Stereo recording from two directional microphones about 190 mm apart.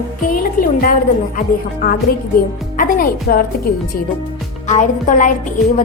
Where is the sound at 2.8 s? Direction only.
50° left (ahead or behind).